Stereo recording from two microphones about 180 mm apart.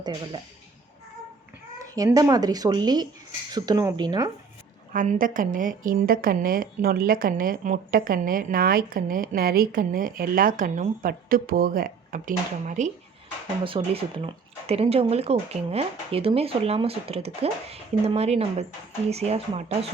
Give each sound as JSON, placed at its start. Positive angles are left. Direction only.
{"t": 0.0, "sound": "speech", "side_deg": -25}
{"t": 2.0, "sound": "speech", "side_deg": -20}
{"t": 4.9, "sound": "a woman's voice", "side_deg": -50}
{"t": 13.7, "sound": "speech", "side_deg": -30}